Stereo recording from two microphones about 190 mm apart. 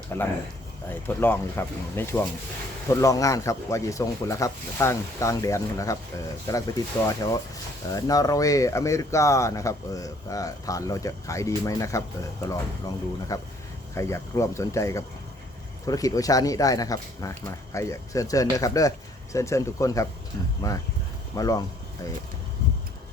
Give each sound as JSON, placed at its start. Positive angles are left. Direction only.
{"t": 0.1, "sound": "speech", "side_deg": 10}